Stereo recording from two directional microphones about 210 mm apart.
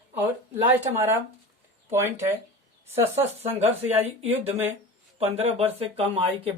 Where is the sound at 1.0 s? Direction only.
10° right (ahead or behind).